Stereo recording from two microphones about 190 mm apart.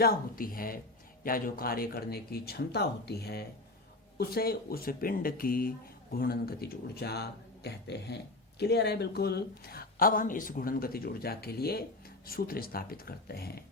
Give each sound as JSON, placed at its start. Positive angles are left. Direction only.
{"t": 0.0, "sound": "speech", "side_deg": 50}